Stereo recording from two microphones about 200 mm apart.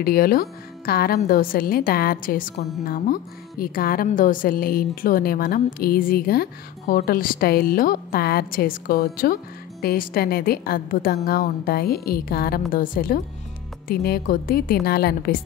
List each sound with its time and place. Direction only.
0.0 s a woman's voice: 45° left (ahead or behind)